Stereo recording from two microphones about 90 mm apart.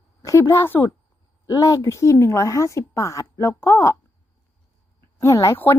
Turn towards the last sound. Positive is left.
turn(degrees=35)  # may be behind; listen again after turning